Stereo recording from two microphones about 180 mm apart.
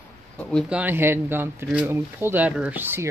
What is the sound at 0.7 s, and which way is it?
Speech, 10° right (ahead or behind).